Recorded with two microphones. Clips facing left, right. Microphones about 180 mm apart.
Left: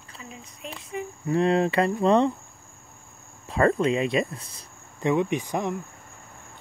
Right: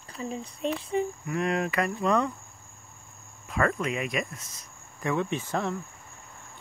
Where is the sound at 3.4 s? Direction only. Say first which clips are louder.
Left 6 dB; 30° left (ahead or behind).